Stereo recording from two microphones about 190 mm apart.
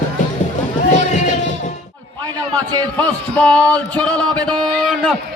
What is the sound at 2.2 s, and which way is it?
Speech, 20° right (ahead or behind).